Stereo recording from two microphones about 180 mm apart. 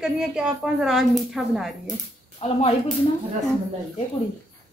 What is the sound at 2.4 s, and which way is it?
Speech, 30° left (ahead or behind).